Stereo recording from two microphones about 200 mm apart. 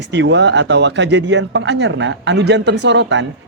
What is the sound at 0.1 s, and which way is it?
Speech, 60° right (ahead or behind).